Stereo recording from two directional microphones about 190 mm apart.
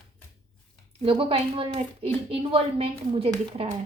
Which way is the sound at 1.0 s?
30° right (ahead or behind).